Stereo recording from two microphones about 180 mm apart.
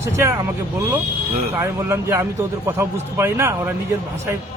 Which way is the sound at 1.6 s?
15° right (ahead or behind).